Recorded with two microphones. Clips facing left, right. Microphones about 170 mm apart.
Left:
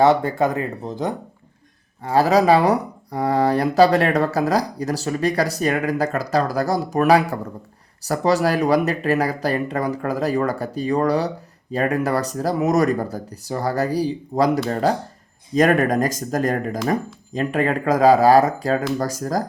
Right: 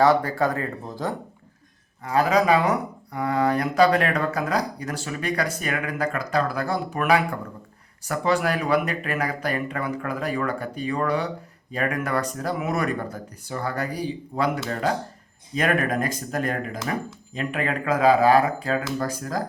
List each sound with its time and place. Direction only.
0.0 s speech: 25° left (ahead or behind)
2.0 s speech: 35° left (ahead or behind)